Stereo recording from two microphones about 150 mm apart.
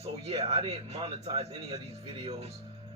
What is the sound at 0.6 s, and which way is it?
A man's voice, 40° right (ahead or behind).